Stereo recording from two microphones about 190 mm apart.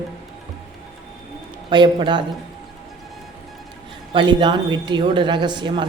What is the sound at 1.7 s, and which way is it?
Speech, 25° right (ahead or behind).